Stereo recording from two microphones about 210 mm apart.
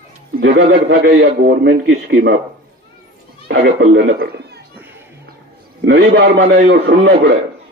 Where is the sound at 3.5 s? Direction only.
55° right (ahead or behind).